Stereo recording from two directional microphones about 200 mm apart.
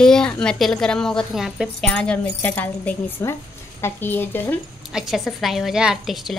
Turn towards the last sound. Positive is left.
turn(degrees=0)  # may be behind; listen again after turning